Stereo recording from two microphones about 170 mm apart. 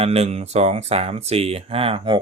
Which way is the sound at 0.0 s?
35° right (ahead or behind).